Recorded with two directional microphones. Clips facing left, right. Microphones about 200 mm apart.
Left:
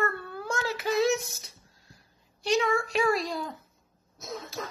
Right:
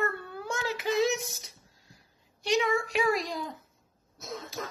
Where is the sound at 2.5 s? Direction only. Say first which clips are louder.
Left 1 dB; 15° right (ahead or behind).